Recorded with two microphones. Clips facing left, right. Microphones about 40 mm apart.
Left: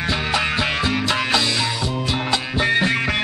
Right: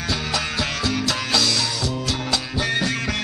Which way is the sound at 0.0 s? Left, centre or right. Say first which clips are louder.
Left 4 dB; left.